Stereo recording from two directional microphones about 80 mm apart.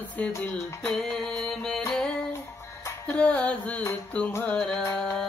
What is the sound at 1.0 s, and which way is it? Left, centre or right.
Mantra, centre.